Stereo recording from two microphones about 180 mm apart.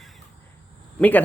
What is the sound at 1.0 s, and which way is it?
Speech, 10° left (ahead or behind).